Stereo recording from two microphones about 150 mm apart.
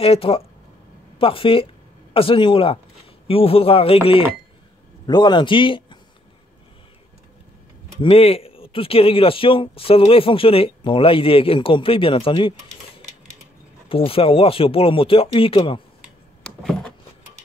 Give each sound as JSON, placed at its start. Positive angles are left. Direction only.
{"t": 0.0, "sound": "a man's voice", "side_deg": 40}
{"t": 8.0, "sound": "speech", "side_deg": 40}
{"t": 13.8, "sound": "speech", "side_deg": 40}
{"t": 16.4, "sound": "a sound", "side_deg": 5}